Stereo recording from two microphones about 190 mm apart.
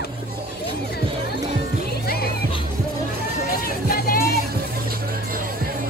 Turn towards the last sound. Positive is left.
turn(degrees=50)  # may be behind; listen again after turning